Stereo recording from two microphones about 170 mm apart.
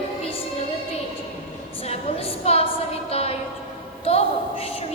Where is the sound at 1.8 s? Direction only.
35° left (ahead or behind).